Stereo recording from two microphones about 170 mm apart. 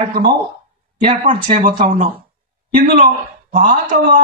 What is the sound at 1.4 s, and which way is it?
Speech, 30° right (ahead or behind).